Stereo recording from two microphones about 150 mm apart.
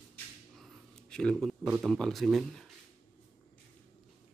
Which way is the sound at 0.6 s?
Centre (ahead or behind).